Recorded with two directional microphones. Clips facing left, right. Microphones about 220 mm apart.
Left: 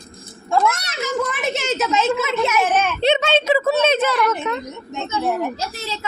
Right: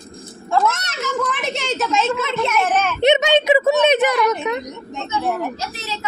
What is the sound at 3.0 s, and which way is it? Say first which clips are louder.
A woman's voice: right 4 dB; 20° right (ahead or behind).